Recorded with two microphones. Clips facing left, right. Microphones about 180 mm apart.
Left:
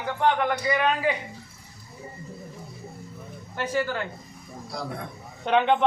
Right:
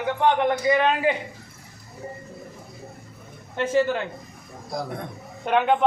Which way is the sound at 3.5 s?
25° right (ahead or behind).